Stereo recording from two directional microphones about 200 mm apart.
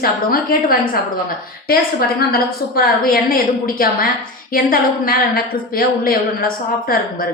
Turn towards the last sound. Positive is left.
turn(degrees=45)  # may be behind; listen again after turning